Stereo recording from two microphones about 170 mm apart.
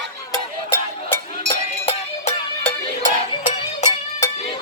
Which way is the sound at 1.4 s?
35° left (ahead or behind).